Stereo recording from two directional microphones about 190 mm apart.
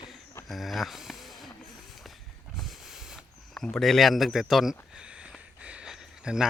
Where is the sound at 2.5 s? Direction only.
Centre (ahead or behind).